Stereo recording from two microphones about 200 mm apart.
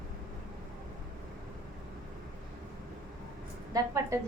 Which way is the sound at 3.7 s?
15° right (ahead or behind).